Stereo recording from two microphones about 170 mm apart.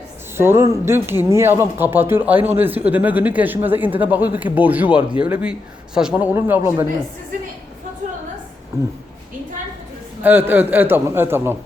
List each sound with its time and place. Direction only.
0.3 s speech: 15° right (ahead or behind)
8.7 s speech: 15° right (ahead or behind)
10.2 s speech: 10° right (ahead or behind)